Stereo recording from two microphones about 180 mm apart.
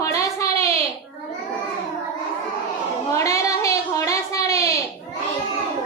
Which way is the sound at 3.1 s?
15° left (ahead or behind).